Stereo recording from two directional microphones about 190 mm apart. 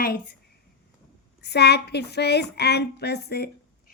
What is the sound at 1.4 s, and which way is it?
A woman's voice, 60° left (ahead or behind).